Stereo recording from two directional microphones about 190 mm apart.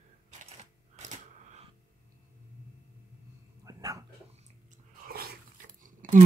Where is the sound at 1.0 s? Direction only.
35° right (ahead or behind).